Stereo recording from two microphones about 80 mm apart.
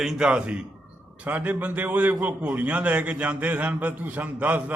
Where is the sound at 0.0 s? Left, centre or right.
Centre.